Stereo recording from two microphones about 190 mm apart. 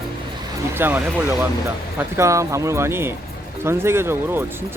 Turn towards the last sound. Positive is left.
turn(degrees=-15)  # may be behind; listen again after turning